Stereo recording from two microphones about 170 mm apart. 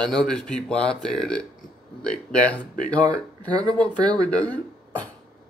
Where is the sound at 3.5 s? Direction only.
25° right (ahead or behind).